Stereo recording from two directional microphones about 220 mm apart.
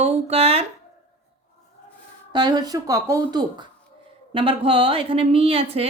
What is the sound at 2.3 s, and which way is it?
Speech, 20° right (ahead or behind).